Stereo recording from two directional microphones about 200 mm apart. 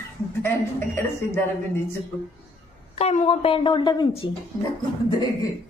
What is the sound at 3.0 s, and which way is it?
A woman's voice, 30° left (ahead or behind).